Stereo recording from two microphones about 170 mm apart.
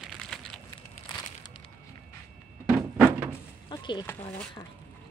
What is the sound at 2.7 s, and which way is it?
Thunk, 15° right (ahead or behind).